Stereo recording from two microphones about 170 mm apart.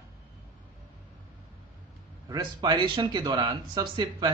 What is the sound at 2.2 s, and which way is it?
A man's voice, 25° right (ahead or behind).